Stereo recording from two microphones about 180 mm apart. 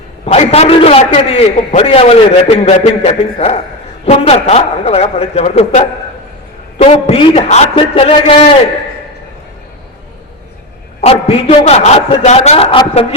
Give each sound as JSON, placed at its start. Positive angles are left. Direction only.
{"t": 0.3, "sound": "a man's voice", "side_deg": 35}
{"t": 11.0, "sound": "a man's voice", "side_deg": 35}